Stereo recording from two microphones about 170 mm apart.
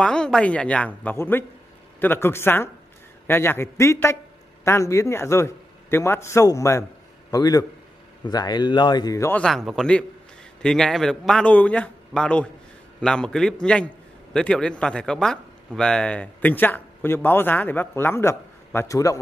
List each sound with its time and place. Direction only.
0.0 s a man's voice: 5° left (ahead or behind)
9.4 s a man's voice: centre (ahead or behind); by 19.1 s 20° left (ahead or behind)